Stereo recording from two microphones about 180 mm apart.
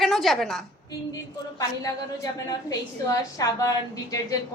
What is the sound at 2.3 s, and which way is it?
A woman's voice, 20° left (ahead or behind).